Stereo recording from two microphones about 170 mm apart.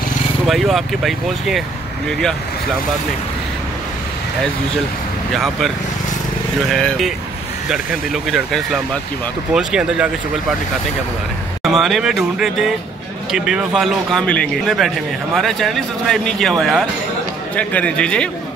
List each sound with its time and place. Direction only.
0.5 s a man's voice: centre (ahead or behind)
5.3 s a man's voice: centre (ahead or behind)
6.7 s a man's voice: 5° left (ahead or behind)
11.6 s a man's voice: centre (ahead or behind)